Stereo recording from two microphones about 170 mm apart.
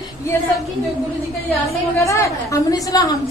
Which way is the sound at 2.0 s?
20° left (ahead or behind).